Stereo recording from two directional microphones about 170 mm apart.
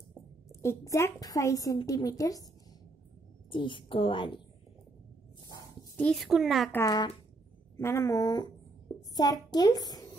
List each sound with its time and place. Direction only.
0.5 s a woman's voice: 15° left (ahead or behind)
3.4 s a woman's voice: 30° left (ahead or behind)
5.9 s a woman's voice: 5° left (ahead or behind)
6.7 s a woman's voice: 20° left (ahead or behind)